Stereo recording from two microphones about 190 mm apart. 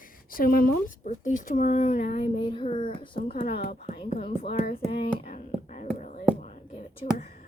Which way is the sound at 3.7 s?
35° left (ahead or behind).